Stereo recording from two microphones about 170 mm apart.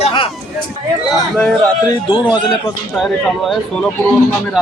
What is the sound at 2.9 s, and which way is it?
Speech, centre (ahead or behind).